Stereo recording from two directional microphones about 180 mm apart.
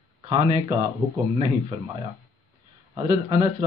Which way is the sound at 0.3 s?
25° right (ahead or behind).